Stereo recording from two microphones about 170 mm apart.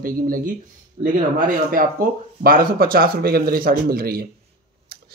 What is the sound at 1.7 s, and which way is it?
A man's voice, 55° right (ahead or behind).